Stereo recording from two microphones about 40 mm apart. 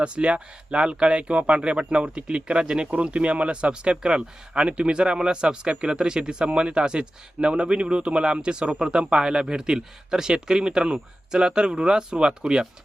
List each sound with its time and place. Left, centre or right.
0.0 s speech: right